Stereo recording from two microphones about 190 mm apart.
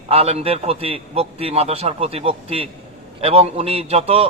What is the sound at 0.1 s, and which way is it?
A man's voice, 30° right (ahead or behind).